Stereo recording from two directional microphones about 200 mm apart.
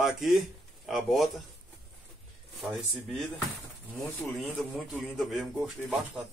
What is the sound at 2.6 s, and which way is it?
Speech, centre (ahead or behind).